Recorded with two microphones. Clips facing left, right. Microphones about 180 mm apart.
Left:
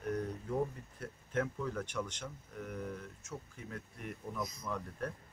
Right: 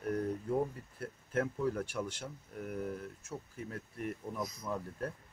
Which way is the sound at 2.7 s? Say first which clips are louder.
Right 4 dB; 40° right (ahead or behind).